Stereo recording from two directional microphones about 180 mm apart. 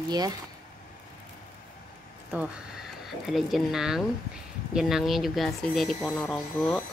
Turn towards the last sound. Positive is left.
turn(degrees=0)  # may be behind; listen again after turning